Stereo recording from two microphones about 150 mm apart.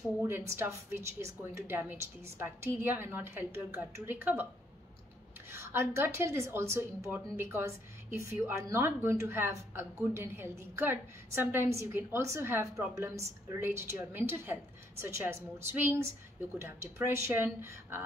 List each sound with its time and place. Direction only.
0.3 s a woman's voice: 15° right (ahead or behind)
5.5 s a woman's voice: 15° right (ahead or behind)